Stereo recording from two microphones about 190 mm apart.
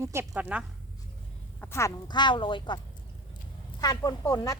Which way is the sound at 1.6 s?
15° left (ahead or behind).